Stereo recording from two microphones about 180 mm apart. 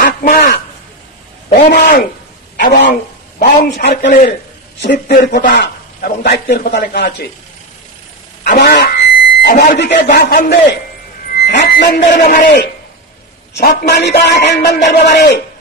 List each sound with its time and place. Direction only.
0.0 s a sound: 60° left (ahead or behind)
1.5 s a man's voice: 65° left (ahead or behind)
4.1 s speech: 45° left (ahead or behind)
4.8 s a man's voice: 55° left (ahead or behind)
8.5 s a sound: 65° left (ahead or behind)
9.5 s speech: 50° left (ahead or behind)
9.8 s speech: 65° left (ahead or behind)
11.9 s speech: 45° left (ahead or behind)
13.6 s a man's voice: 65° left (ahead or behind)